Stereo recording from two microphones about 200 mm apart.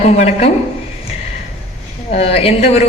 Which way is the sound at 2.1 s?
30° left (ahead or behind).